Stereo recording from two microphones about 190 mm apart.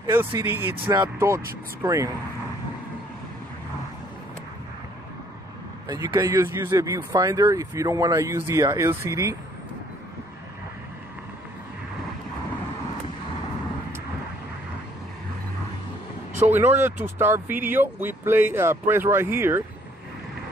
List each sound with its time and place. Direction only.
0.0 s speech: 10° right (ahead or behind)
5.9 s speech: 20° right (ahead or behind)
16.4 s speech: 10° right (ahead or behind)